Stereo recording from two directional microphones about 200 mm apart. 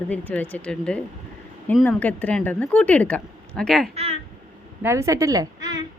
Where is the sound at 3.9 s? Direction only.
30° right (ahead or behind).